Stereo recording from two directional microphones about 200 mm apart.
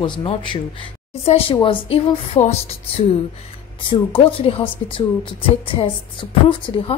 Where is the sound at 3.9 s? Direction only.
25° left (ahead or behind).